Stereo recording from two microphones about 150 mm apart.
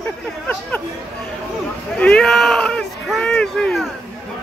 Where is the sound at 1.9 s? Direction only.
5° left (ahead or behind).